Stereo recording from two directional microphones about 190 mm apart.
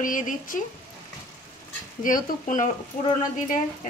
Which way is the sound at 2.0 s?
45° left (ahead or behind).